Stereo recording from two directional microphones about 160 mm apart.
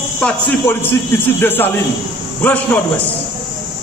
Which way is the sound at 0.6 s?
15° left (ahead or behind).